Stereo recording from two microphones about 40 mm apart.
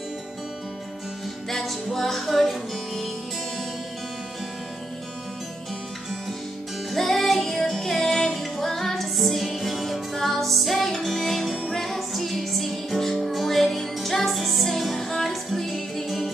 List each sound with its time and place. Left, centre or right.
1.5 s music: centre
6.9 s music: centre